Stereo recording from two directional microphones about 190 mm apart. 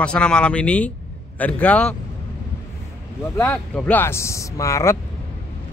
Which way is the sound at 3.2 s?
10° left (ahead or behind).